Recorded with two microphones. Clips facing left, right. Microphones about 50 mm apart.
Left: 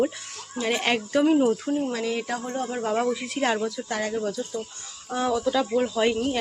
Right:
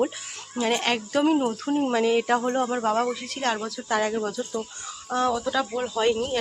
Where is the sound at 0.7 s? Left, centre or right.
Centre.